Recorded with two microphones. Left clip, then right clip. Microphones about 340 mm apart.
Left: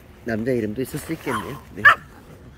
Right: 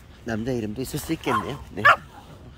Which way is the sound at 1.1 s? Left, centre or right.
Centre.